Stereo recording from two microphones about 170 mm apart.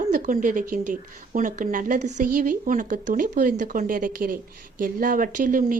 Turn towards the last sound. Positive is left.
turn(degrees=-50)  # may be behind; listen again after turning